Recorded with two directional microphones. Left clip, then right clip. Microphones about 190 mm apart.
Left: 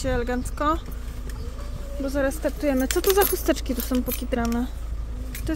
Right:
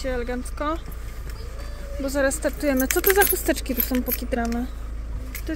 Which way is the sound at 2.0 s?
Centre (ahead or behind).